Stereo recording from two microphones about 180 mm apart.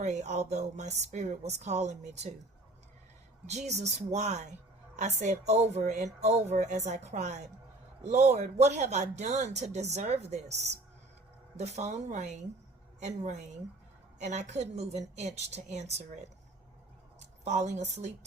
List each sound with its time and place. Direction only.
0.0 s speech: 40° right (ahead or behind)
3.4 s speech: 40° right (ahead or behind)
17.4 s speech: 40° right (ahead or behind)